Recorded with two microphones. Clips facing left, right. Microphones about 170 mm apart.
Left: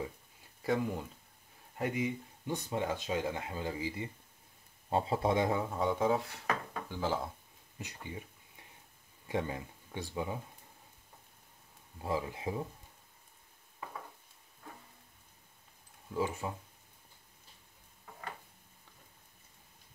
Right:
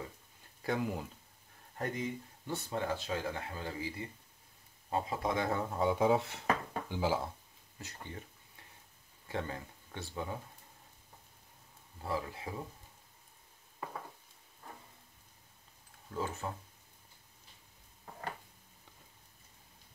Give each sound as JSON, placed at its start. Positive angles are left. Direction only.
{"t": 0.6, "sound": "speech", "side_deg": 0}
{"t": 1.8, "sound": "speech", "side_deg": 10}
{"t": 5.5, "sound": "speech", "side_deg": 5}
{"t": 6.0, "sound": "speech", "side_deg": -25}
{"t": 6.9, "sound": "speech", "side_deg": -10}
{"t": 7.8, "sound": "a sound", "side_deg": 10}
{"t": 9.3, "sound": "speech", "side_deg": 15}
{"t": 12.0, "sound": "speech", "side_deg": 20}
{"t": 16.1, "sound": "speech", "side_deg": 15}